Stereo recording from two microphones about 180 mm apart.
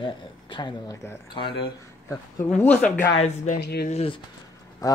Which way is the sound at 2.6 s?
10° left (ahead or behind).